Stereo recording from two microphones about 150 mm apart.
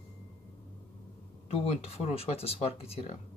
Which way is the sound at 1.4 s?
45° left (ahead or behind).